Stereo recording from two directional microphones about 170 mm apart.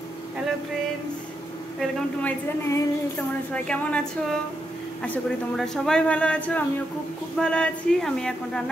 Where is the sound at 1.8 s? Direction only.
10° left (ahead or behind).